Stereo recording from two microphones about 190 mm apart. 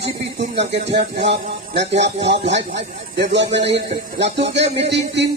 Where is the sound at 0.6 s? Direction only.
65° right (ahead or behind).